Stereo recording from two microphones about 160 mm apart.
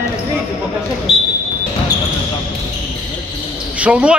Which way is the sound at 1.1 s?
Centre (ahead or behind).